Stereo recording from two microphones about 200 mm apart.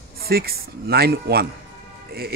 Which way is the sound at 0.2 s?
50° right (ahead or behind).